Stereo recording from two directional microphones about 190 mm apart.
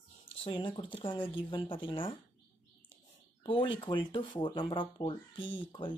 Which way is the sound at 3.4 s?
25° left (ahead or behind).